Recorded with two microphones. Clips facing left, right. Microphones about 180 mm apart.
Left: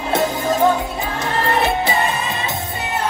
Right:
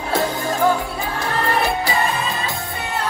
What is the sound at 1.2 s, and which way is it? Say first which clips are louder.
Music: left 2 dB; 20° left (ahead or behind).